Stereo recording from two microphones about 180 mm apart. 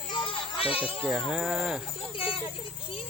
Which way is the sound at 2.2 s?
30° left (ahead or behind).